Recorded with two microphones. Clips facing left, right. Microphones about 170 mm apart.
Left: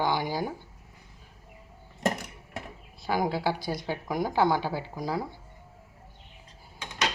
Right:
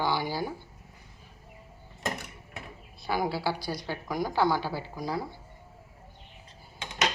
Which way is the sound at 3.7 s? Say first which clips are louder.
Left 2 dB; 20° left (ahead or behind).